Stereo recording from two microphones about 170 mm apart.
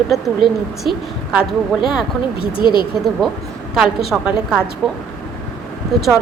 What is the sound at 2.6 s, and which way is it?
Speech, 30° left (ahead or behind).